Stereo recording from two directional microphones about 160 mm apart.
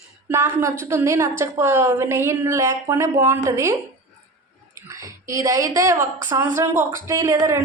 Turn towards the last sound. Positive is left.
turn(degrees=-20)  # may be behind; listen again after turning